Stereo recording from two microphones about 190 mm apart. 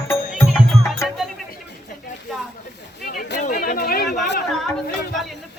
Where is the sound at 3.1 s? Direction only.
50° left (ahead or behind).